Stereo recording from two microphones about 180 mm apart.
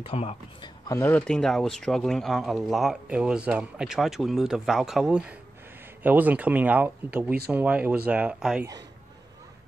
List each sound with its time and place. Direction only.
0.0 s a man's voice: 35° left (ahead or behind)
0.8 s speech: 15° left (ahead or behind); by 8.6 s 5° right (ahead or behind)